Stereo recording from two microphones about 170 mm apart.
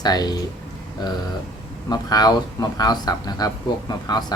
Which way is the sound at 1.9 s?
25° left (ahead or behind).